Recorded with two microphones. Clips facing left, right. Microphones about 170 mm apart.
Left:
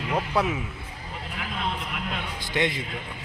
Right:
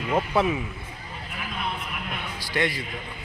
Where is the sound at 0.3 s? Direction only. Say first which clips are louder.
Right 2 dB; centre (ahead or behind).